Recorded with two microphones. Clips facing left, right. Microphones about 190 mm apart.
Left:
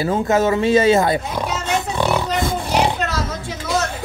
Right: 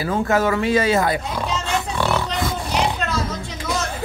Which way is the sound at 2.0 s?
15° left (ahead or behind).